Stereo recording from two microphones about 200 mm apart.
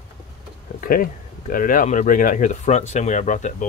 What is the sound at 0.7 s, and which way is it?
Speech, 45° left (ahead or behind).